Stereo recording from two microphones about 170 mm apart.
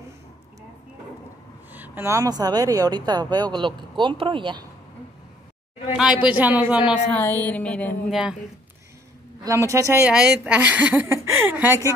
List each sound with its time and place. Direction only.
1.7 s speech: 10° right (ahead or behind); by 4.6 s 30° right (ahead or behind)
6.2 s a woman's voice: 10° right (ahead or behind)
7.1 s a sound: 10° left (ahead or behind)
8.1 s speech: 5° right (ahead or behind)
9.4 s a woman's voice: 15° right (ahead or behind)
10.0 s a woman's voice: 5° right (ahead or behind)